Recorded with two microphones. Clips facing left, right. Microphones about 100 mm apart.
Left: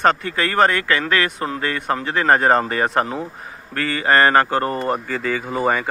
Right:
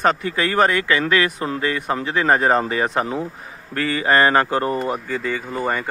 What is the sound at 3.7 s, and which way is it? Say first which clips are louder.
A man's voice: even; 20° right (ahead or behind).